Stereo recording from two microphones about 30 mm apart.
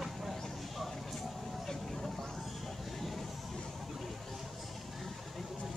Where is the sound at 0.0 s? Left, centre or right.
Centre.